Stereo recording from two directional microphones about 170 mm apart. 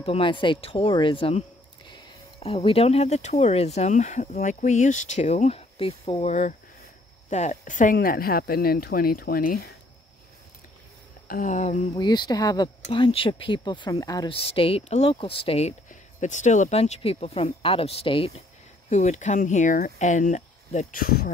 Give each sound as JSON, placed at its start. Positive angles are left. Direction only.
{"t": 0.0, "sound": "speech", "side_deg": 30}
{"t": 2.4, "sound": "speech", "side_deg": 35}
{"t": 11.2, "sound": "speech", "side_deg": 50}
{"t": 12.0, "sound": "speech", "side_deg": 25}
{"t": 14.3, "sound": "speech", "side_deg": 35}
{"t": 18.9, "sound": "speech", "side_deg": 45}